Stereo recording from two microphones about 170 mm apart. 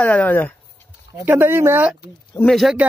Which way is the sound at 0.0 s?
10° left (ahead or behind).